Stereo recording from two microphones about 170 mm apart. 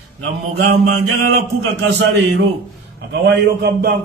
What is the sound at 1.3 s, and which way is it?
A man's voice, 85° right.